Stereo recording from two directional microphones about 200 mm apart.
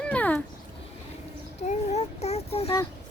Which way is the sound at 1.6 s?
35° left (ahead or behind).